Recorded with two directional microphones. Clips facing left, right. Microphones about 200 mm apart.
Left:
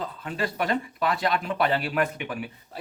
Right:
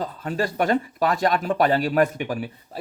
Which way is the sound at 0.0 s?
40° right (ahead or behind).